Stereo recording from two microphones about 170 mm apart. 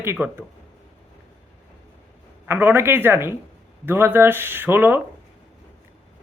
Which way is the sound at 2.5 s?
10° right (ahead or behind).